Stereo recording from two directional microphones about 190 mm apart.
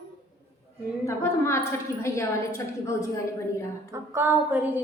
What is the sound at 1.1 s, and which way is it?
A woman's voice, 15° left (ahead or behind).